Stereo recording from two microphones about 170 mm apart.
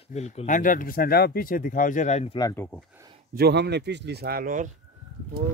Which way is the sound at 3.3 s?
70° right (ahead or behind).